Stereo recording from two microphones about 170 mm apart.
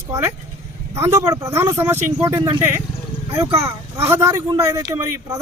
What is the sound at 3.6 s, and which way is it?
Speech, 15° right (ahead or behind).